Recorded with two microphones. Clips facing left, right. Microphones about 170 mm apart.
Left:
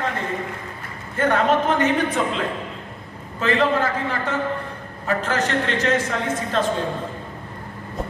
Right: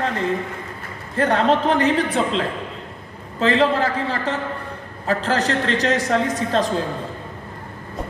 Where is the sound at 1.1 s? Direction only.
35° right (ahead or behind).